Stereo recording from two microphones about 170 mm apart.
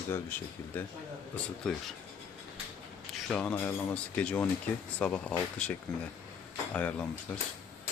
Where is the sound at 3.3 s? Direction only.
10° left (ahead or behind).